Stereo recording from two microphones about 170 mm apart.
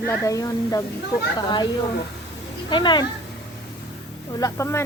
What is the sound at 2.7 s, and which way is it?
Speech, 25° left (ahead or behind).